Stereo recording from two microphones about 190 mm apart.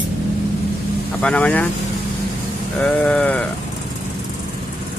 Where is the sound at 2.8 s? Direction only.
5° left (ahead or behind).